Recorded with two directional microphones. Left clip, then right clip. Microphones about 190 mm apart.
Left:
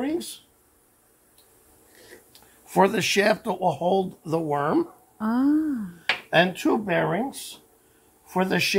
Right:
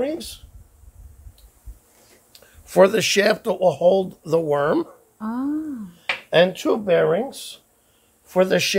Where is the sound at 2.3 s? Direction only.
45° right (ahead or behind).